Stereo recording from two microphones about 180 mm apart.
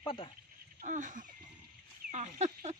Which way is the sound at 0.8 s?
45° right (ahead or behind).